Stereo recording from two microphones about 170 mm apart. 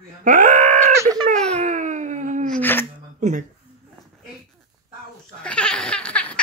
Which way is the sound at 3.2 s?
45° right (ahead or behind).